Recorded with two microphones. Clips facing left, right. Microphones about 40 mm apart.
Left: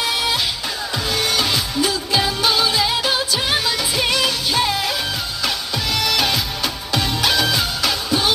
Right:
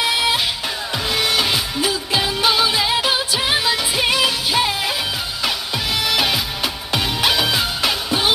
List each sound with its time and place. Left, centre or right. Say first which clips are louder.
0.0 s music: right 2 dB; right
5.9 s music: even; centre